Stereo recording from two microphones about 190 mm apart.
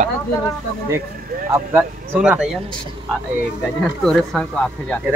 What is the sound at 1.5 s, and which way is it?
Speech, 10° right (ahead or behind).